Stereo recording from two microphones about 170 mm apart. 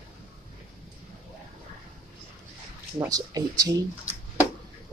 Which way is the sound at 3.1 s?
20° right (ahead or behind).